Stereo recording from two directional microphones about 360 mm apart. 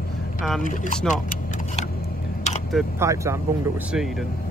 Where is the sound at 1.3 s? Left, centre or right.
Left.